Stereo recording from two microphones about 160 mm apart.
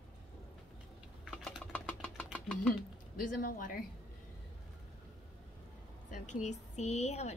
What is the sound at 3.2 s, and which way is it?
Speech, 60° left (ahead or behind).